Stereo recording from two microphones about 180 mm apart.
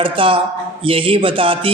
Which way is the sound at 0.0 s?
30° right (ahead or behind).